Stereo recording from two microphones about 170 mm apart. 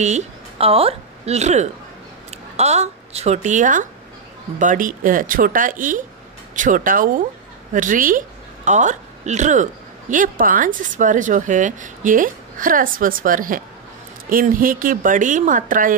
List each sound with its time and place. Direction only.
0.0 s a woman's voice: 40° right (ahead or behind)